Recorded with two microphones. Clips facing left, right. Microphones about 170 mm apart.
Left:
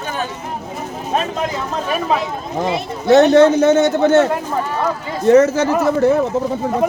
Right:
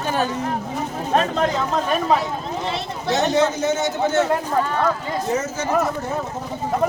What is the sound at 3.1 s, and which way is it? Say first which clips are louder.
A man's voice: left 10 dB; 60° left (ahead or behind).